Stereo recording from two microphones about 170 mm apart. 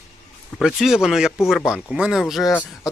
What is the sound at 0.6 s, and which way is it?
Speech, centre (ahead or behind).